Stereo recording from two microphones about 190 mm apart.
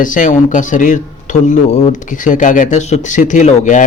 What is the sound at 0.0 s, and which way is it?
Speech, 45° left (ahead or behind).